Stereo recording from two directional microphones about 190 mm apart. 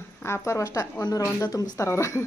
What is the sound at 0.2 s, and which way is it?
Speech, 15° left (ahead or behind).